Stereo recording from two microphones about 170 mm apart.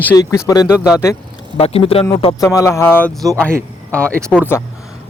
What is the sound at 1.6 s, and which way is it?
Speech, 35° left (ahead or behind).